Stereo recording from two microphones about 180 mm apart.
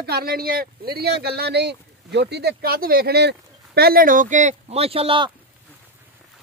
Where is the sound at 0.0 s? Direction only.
60° right (ahead or behind); by 5.3 s 30° right (ahead or behind).